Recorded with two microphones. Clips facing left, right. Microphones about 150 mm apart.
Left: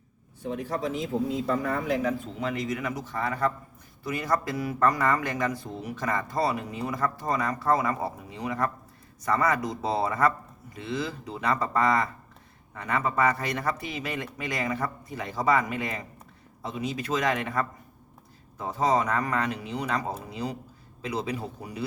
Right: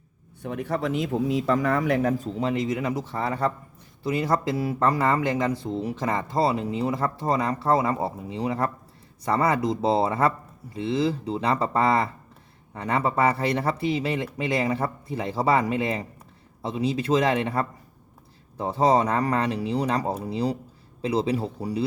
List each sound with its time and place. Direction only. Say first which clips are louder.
0.4 s speech: right 3 dB; 65° right (ahead or behind)
2.1 s speech: right 5 dB; 35° right (ahead or behind)